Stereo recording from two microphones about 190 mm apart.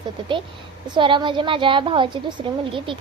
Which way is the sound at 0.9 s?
25° right (ahead or behind).